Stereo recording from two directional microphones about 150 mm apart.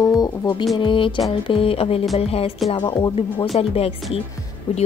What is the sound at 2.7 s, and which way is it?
Speech, 30° left (ahead or behind).